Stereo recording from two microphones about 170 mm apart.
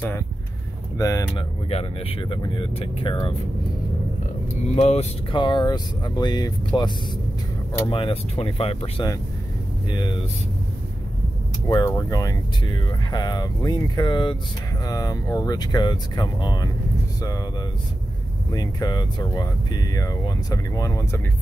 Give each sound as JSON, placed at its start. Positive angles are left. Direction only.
{"t": 0.9, "sound": "speech", "side_deg": 20}
{"t": 1.7, "sound": "speech", "side_deg": 35}
{"t": 4.7, "sound": "speech", "side_deg": 35}
{"t": 7.9, "sound": "speech", "side_deg": 35}
{"t": 11.6, "sound": "speech", "side_deg": 20}
{"t": 18.5, "sound": "speech", "side_deg": 25}